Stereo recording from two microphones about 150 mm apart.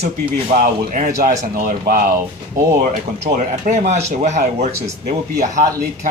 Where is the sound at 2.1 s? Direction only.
20° right (ahead or behind).